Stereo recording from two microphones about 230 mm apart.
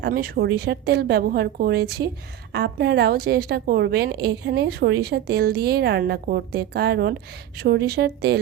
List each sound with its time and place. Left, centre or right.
0.0 s a woman's voice: right